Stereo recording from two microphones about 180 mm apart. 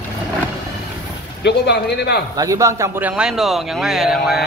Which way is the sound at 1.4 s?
70° left (ahead or behind).